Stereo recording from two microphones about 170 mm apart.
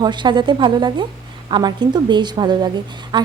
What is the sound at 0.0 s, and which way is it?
A woman's voice, 25° right (ahead or behind).